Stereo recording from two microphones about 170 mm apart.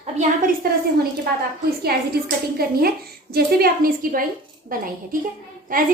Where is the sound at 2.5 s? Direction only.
60° right (ahead or behind).